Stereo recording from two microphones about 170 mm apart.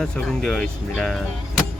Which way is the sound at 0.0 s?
Centre (ahead or behind).